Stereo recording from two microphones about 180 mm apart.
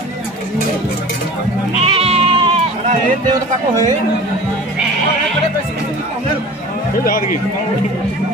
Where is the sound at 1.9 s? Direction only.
35° right (ahead or behind).